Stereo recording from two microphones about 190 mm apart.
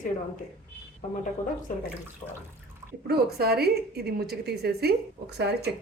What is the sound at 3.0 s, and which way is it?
A woman's voice, 55° right (ahead or behind).